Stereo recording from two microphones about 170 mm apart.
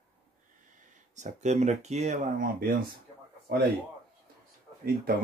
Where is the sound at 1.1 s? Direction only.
45° right (ahead or behind).